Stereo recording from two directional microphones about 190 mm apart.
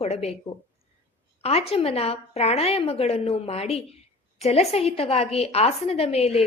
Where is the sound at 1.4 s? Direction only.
35° left (ahead or behind).